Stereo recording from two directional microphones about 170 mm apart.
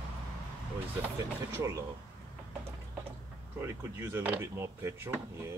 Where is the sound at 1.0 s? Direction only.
15° right (ahead or behind).